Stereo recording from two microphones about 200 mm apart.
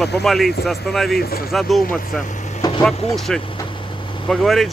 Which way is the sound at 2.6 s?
20° left (ahead or behind).